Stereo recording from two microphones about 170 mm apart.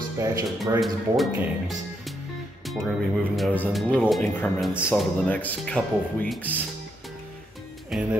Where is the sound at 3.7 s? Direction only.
Centre (ahead or behind).